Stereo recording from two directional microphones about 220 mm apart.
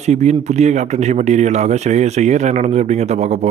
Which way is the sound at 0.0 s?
30° right (ahead or behind).